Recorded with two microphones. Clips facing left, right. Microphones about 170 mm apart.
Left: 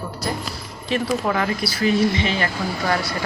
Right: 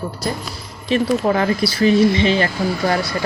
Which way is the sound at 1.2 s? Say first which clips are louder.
Right 5 dB; 35° right (ahead or behind).